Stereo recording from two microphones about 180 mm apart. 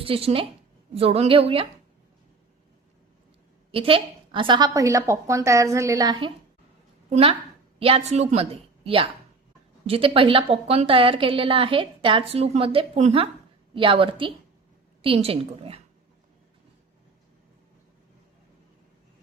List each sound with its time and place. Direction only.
0.0 s a woman's voice: 30° right (ahead or behind)
3.7 s a woman's voice: 30° right (ahead or behind)